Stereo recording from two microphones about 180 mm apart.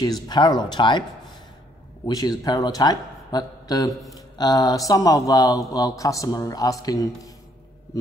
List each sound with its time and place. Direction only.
0.0 s speech: 25° left (ahead or behind)
2.0 s speech: 20° left (ahead or behind)